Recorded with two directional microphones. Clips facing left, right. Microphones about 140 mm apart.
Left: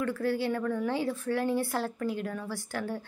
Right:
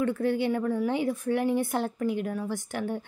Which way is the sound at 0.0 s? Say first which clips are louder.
Right 3 dB; 20° right (ahead or behind).